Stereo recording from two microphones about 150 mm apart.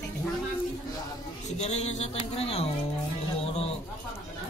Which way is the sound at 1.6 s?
45° left (ahead or behind).